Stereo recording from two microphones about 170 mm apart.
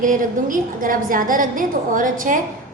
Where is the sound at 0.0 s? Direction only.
50° right (ahead or behind).